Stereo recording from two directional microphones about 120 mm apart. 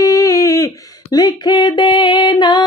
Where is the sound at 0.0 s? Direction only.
25° left (ahead or behind).